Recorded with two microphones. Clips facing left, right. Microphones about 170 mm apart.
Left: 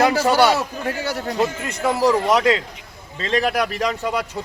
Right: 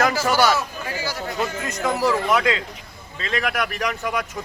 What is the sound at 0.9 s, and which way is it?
Speech, 60° left (ahead or behind).